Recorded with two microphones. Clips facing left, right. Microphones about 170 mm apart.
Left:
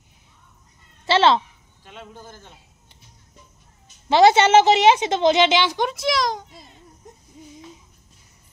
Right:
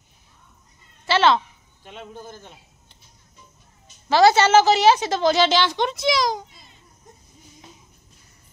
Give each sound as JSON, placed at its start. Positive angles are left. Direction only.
{"t": 1.0, "sound": "a child's voice", "side_deg": 25}
{"t": 1.9, "sound": "speech", "side_deg": -20}
{"t": 4.1, "sound": "a woman's voice", "side_deg": 20}